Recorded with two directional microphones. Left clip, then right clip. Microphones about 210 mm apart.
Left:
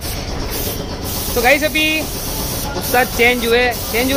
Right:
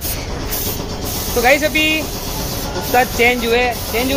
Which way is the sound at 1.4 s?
5° right (ahead or behind).